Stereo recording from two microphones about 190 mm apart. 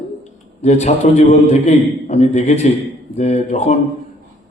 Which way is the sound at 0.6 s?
35° left (ahead or behind).